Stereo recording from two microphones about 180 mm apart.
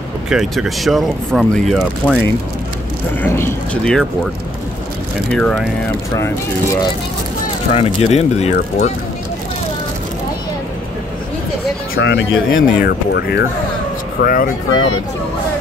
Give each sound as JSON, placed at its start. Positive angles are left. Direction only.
{"t": 0.3, "sound": "speech", "side_deg": 0}
{"t": 3.2, "sound": "speech", "side_deg": 15}
{"t": 5.3, "sound": "speech", "side_deg": 0}
{"t": 7.7, "sound": "speech", "side_deg": 35}
{"t": 11.9, "sound": "speech", "side_deg": 90}
{"t": 14.2, "sound": "speech", "side_deg": 55}